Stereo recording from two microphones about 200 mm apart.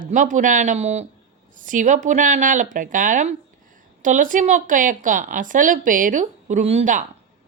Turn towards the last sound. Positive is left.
turn(degrees=-35)  # may be behind; listen again after turning